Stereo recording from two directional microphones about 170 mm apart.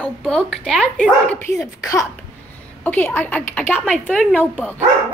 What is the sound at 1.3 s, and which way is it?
A child's voice, 15° left (ahead or behind).